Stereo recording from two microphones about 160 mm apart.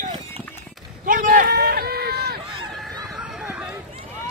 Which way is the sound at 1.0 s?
60° right (ahead or behind).